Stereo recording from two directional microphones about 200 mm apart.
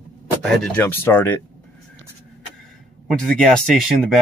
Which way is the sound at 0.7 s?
10° left (ahead or behind).